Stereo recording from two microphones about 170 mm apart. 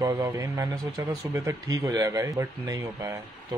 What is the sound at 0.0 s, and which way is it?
Speech, 20° right (ahead or behind).